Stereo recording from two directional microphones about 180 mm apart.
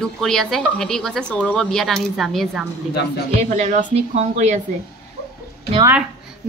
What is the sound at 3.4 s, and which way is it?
A woman's voice, 45° right (ahead or behind).